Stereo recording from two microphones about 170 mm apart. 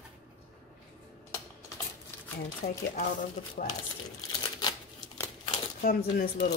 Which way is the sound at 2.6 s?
45° left (ahead or behind).